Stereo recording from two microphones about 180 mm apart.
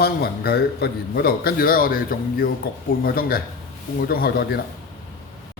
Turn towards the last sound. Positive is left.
turn(degrees=60)  # may be behind; listen again after turning